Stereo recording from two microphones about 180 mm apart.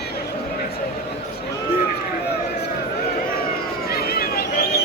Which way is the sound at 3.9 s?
60° left (ahead or behind).